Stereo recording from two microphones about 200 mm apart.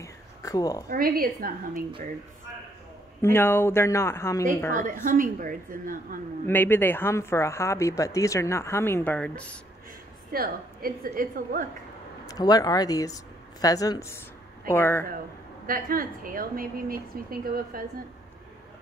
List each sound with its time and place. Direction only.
0.0 s a sound: 15° left (ahead or behind)
0.8 s a woman's voice: 45° right (ahead or behind)
3.2 s speech: 10° left (ahead or behind)
4.7 s a woman's voice: 40° right (ahead or behind)
6.4 s speech: 10° left (ahead or behind)
10.3 s a woman's voice: 45° right (ahead or behind)
12.3 s speech: 20° left (ahead or behind)
15.6 s a woman's voice: 45° right (ahead or behind)